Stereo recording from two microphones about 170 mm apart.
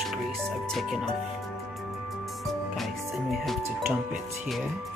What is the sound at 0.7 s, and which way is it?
Speech, centre (ahead or behind).